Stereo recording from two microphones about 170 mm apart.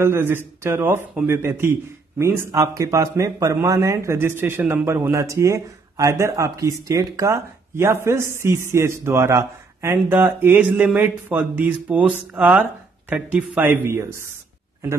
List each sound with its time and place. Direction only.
0.0 s a man's voice: 15° right (ahead or behind)